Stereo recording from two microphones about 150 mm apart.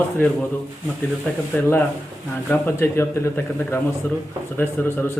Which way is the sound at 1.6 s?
15° left (ahead or behind).